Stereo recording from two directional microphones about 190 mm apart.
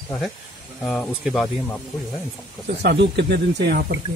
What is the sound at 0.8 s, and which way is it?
Speech, centre (ahead or behind).